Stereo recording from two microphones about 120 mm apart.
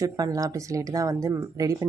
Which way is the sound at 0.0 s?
30° right (ahead or behind).